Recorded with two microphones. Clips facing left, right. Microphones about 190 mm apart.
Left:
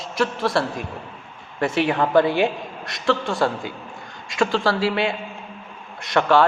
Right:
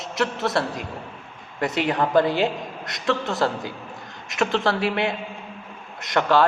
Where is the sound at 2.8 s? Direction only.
20° right (ahead or behind).